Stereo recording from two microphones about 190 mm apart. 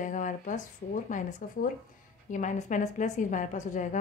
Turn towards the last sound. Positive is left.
turn(degrees=40)  # may be behind; listen again after turning